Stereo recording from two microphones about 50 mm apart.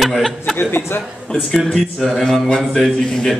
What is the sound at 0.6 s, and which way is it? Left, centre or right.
Speech, left.